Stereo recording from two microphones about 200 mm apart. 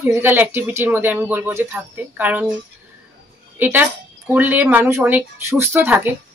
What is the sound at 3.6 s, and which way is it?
Speech, 10° right (ahead or behind).